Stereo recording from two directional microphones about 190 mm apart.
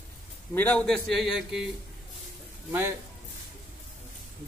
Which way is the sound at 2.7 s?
10° right (ahead or behind).